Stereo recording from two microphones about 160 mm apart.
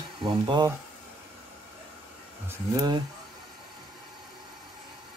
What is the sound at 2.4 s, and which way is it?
Speech, 25° right (ahead or behind).